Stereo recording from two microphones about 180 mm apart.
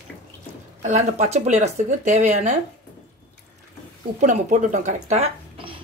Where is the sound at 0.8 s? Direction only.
40° right (ahead or behind).